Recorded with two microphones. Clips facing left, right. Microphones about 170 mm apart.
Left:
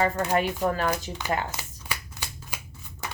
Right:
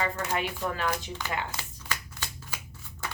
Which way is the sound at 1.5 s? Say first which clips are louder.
Left 1 dB; 15° left (ahead or behind).